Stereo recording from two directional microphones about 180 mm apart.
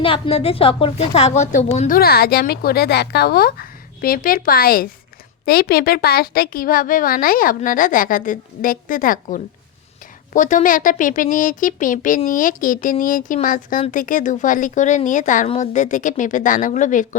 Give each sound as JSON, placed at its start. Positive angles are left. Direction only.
{"t": 0.0, "sound": "a woman's voice", "side_deg": 30}
{"t": 2.0, "sound": "a woman's voice", "side_deg": 60}